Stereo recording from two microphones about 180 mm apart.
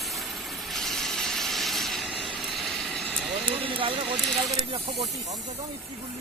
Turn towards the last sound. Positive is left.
turn(degrees=-30)  # may be behind; listen again after turning